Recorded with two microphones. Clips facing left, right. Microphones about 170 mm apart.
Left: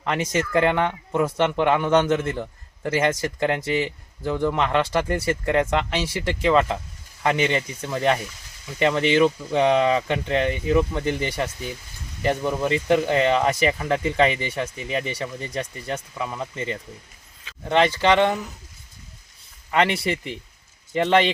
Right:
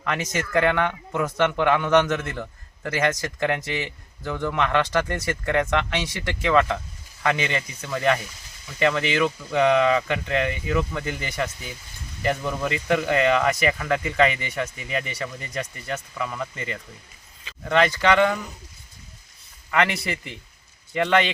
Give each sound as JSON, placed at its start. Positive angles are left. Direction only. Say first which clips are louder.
{"t": 0.0, "sound": "a man's voice", "louder": "left 3 dB", "side_deg": 30}
{"t": 19.7, "sound": "a man's voice", "louder": "left 2 dB", "side_deg": 30}